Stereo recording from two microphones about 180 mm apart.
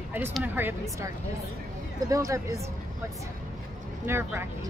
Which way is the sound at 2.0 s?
20° right (ahead or behind).